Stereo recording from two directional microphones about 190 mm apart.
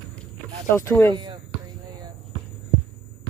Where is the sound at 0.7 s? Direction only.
15° left (ahead or behind).